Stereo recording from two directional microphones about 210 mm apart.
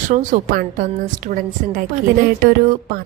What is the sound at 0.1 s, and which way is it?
A woman's voice, 35° right (ahead or behind).